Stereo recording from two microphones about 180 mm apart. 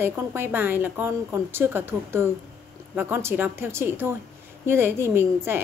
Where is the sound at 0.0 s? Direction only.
15° right (ahead or behind).